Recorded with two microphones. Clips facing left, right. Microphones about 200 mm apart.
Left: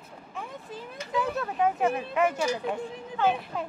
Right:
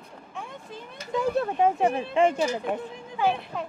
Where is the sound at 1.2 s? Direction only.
30° right (ahead or behind).